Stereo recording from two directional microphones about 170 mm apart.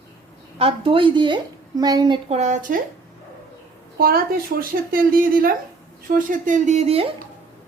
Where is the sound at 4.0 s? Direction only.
60° right (ahead or behind); by 7.0 s 40° right (ahead or behind).